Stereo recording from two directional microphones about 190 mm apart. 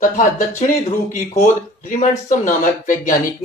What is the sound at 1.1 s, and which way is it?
Speech, 45° left (ahead or behind).